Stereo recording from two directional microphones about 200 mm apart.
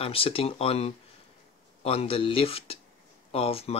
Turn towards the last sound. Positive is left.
turn(degrees=30)  # may be behind; listen again after turning